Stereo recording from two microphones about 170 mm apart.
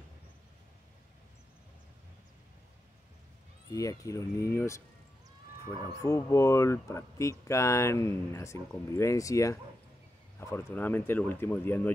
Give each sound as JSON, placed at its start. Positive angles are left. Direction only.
{"t": 3.7, "sound": "speech", "side_deg": 20}
{"t": 6.0, "sound": "speech", "side_deg": 15}